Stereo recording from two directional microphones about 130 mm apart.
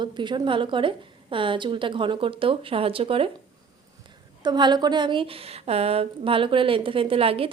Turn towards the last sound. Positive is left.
turn(degrees=-45)  # may be behind; listen again after turning